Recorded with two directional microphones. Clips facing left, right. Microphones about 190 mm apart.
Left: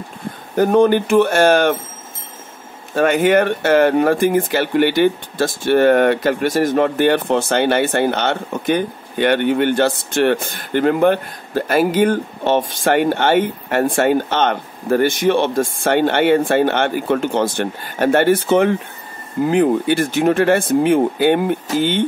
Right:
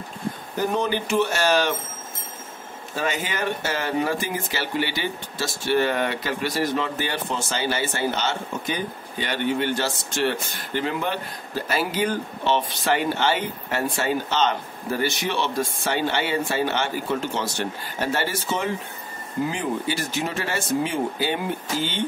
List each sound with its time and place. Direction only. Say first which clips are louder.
0.6 s speech: left 12 dB; 55° left (ahead or behind)
2.9 s speech: left 14 dB; 60° left (ahead or behind)